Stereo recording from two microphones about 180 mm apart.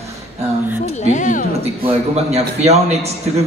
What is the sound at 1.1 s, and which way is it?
Speech, 45° left (ahead or behind).